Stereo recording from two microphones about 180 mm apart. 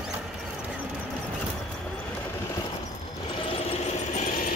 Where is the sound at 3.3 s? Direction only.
30° left (ahead or behind).